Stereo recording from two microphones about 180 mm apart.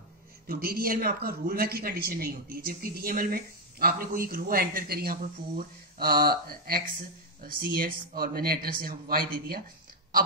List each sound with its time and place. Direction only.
0.5 s speech: 55° right (ahead or behind)